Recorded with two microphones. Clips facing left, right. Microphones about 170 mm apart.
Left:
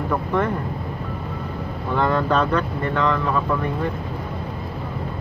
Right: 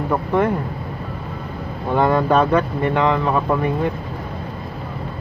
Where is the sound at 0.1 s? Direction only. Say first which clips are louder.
Right 4 dB; 20° right (ahead or behind).